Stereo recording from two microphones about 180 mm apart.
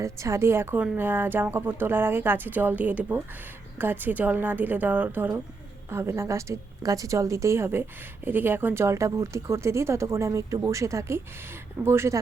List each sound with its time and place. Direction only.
0.0 s a woman's voice: 15° right (ahead or behind)